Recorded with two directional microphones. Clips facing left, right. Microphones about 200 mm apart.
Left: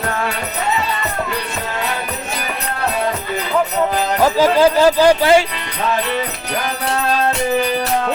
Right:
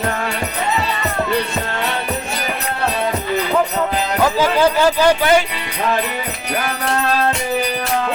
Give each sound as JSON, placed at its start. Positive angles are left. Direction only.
{"t": 4.2, "sound": "speech", "side_deg": 35}